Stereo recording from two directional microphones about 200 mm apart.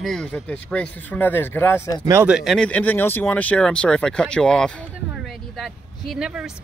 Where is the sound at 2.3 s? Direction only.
Centre (ahead or behind).